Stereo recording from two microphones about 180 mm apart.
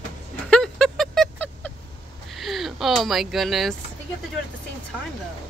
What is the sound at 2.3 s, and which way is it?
Speech, centre (ahead or behind).